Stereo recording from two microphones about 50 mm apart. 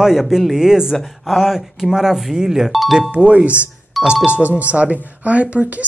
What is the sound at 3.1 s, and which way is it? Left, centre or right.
Speech, right.